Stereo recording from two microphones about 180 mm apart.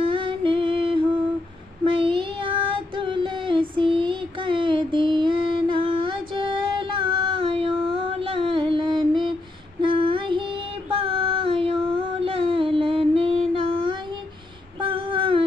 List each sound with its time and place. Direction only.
0.0 s female singing: 30° right (ahead or behind)
1.9 s child singing: 30° right (ahead or behind)